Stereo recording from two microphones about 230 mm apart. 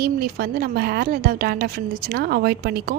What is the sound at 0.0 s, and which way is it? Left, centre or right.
A woman's voice, right.